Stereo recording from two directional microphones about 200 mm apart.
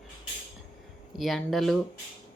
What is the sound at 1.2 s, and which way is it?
Speech, centre (ahead or behind).